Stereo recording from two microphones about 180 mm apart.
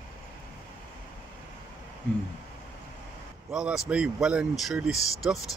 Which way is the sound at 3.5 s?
5° right (ahead or behind).